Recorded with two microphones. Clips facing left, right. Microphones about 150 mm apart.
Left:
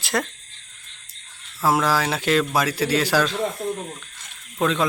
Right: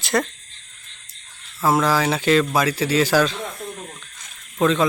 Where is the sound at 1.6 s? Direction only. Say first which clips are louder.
Right 2 dB; centre (ahead or behind).